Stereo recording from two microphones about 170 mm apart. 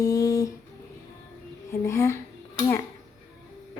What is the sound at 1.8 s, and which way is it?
Speech, 15° left (ahead or behind).